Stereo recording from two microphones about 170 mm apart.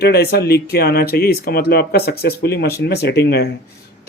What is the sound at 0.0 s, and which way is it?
Speech, 70° left (ahead or behind).